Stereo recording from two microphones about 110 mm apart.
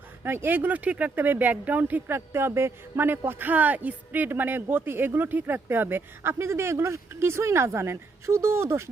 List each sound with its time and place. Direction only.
0.3 s speech: 20° right (ahead or behind)